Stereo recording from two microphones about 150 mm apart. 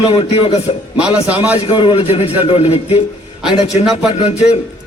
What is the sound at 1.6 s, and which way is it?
A man's voice, 35° left (ahead or behind).